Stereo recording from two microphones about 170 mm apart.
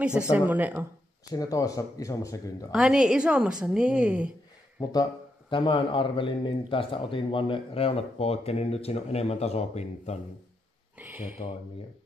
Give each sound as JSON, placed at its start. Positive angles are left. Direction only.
{"t": 0.3, "sound": "a woman's voice", "side_deg": -10}
{"t": 1.3, "sound": "speech", "side_deg": 20}
{"t": 2.7, "sound": "a woman's voice", "side_deg": -5}
{"t": 4.8, "sound": "speech", "side_deg": 25}
{"t": 11.0, "sound": "a sound", "side_deg": -10}